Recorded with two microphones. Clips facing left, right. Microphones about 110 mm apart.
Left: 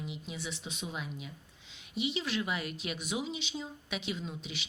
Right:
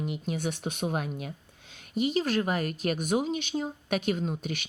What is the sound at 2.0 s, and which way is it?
Speech, 45° right (ahead or behind).